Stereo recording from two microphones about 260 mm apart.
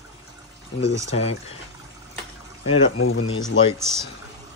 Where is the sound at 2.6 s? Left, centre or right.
Left.